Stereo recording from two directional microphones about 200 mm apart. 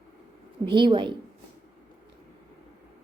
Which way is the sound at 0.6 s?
25° right (ahead or behind).